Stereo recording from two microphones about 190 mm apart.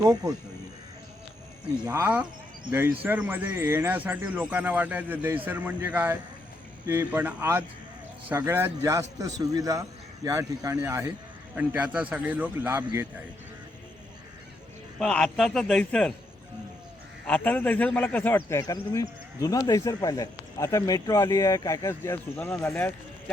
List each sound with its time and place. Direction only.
0.0 s speech: 20° right (ahead or behind)
1.8 s speech: 10° right (ahead or behind)
14.9 s a man's voice: 5° left (ahead or behind)
17.2 s a man's voice: 10° left (ahead or behind)